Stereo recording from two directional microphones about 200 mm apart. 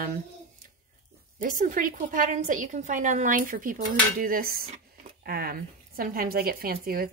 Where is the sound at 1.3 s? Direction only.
45° right (ahead or behind).